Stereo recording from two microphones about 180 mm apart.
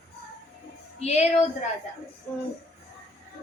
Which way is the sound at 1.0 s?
35° left (ahead or behind).